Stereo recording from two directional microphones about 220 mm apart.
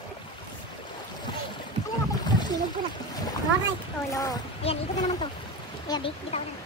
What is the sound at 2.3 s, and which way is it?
Splash, 20° left (ahead or behind).